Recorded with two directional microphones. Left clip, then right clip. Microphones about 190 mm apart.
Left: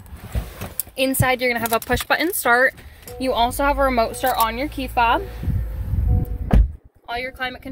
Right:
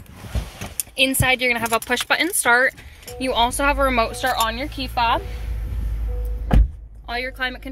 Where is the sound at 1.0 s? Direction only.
25° left (ahead or behind).